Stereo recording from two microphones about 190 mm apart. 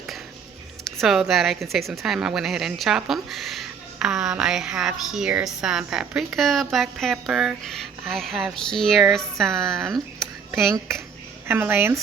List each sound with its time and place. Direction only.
1.0 s speech: centre (ahead or behind)
11.4 s speech: 10° right (ahead or behind)